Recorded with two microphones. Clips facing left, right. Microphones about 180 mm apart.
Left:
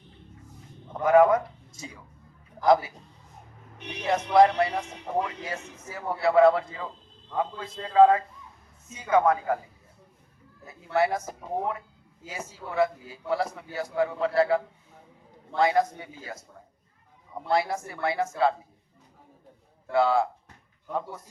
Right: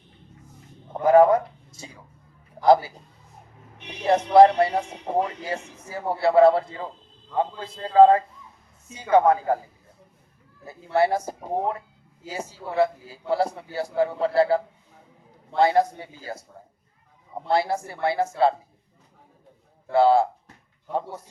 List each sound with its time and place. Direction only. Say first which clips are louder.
1.0 s a man's voice: right 3 dB; 30° right (ahead or behind)
4.0 s a man's voice: right 5 dB; 30° right (ahead or behind)
10.7 s a man's voice: right 3 dB; 30° right (ahead or behind)
17.5 s a man's voice: right 3 dB; 30° right (ahead or behind)
19.9 s a man's voice: right 5 dB; 30° right (ahead or behind)